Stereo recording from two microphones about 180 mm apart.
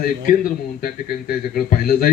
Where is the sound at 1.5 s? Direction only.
55° left (ahead or behind).